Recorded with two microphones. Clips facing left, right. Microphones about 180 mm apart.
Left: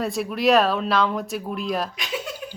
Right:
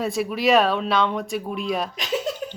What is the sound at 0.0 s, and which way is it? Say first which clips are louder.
Speech: even; centre (ahead or behind).